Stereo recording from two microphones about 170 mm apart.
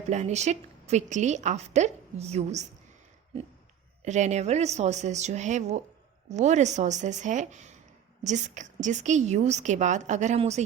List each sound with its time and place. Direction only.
0.1 s a woman's voice: 40° right (ahead or behind)
4.0 s a woman's voice: 45° right (ahead or behind)